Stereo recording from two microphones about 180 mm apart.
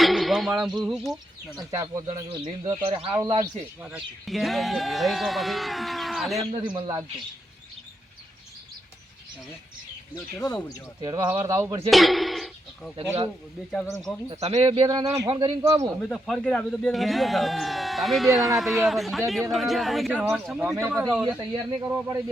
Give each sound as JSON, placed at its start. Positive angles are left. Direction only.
{"t": 0.0, "sound": "speech", "side_deg": 0}
{"t": 1.5, "sound": "speech", "side_deg": -20}
{"t": 3.8, "sound": "speech", "side_deg": -5}
{"t": 6.4, "sound": "speech", "side_deg": -25}
{"t": 11.0, "sound": "speech", "side_deg": -25}
{"t": 11.4, "sound": "a man's voice", "side_deg": -15}
{"t": 11.9, "sound": "speech", "side_deg": 0}
{"t": 14.3, "sound": "speech", "side_deg": -35}
{"t": 16.0, "sound": "speech", "side_deg": 0}
{"t": 20.7, "sound": "a man's voice", "side_deg": -15}